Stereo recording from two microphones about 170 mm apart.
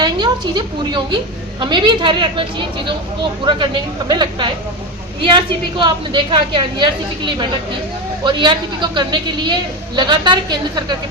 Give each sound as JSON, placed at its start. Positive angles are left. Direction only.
{"t": 0.0, "sound": "a woman's voice", "side_deg": -25}
{"t": 4.1, "sound": "a woman's voice", "side_deg": -25}